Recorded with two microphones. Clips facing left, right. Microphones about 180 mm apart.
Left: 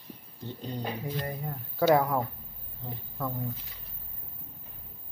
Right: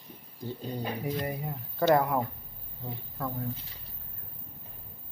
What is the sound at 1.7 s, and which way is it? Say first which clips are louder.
Speech: left 1 dB; centre (ahead or behind).